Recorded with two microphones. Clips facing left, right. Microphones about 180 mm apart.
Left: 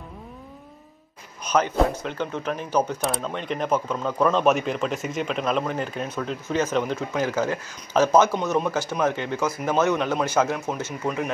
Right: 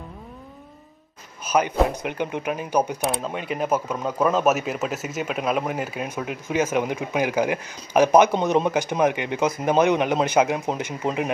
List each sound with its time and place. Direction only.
1.4 s speech: 5° right (ahead or behind)